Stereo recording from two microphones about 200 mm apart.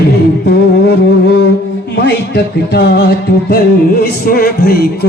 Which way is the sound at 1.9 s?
55° left (ahead or behind).